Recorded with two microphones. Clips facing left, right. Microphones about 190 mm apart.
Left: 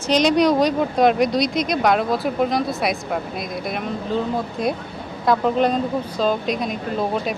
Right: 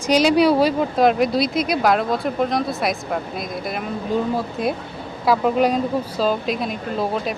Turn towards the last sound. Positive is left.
turn(degrees=0)  # may be behind; listen again after turning